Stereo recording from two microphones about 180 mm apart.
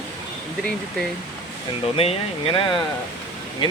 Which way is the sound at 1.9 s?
30° left (ahead or behind).